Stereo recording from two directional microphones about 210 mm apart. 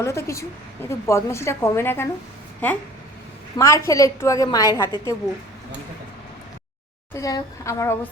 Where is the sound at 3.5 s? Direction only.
15° left (ahead or behind).